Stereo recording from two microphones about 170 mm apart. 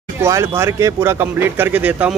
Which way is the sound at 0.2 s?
15° right (ahead or behind).